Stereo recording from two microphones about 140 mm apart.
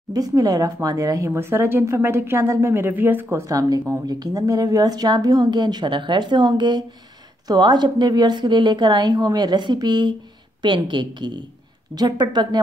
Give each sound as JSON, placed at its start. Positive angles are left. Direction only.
{"t": 0.1, "sound": "a woman's voice", "side_deg": -25}